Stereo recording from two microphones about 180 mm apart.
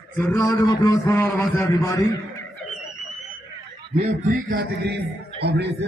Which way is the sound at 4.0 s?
45° right (ahead or behind).